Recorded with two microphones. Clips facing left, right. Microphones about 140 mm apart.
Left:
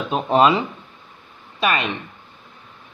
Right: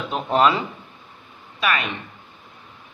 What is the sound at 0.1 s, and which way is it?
Speech, 15° left (ahead or behind).